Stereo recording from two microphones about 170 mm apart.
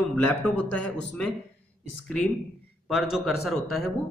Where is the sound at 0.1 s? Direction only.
10° left (ahead or behind).